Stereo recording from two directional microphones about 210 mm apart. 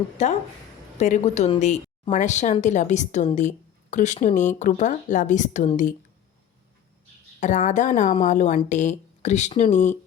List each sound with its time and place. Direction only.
0.2 s a woman's voice: 35° left (ahead or behind)
7.3 s a woman's voice: 35° left (ahead or behind)